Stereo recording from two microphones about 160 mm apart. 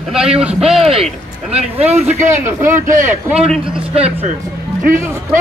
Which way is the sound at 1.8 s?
40° right (ahead or behind).